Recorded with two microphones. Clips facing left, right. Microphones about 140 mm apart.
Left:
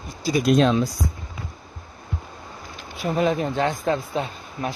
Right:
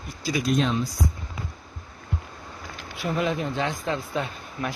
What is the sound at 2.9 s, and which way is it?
Speech, 30° left (ahead or behind).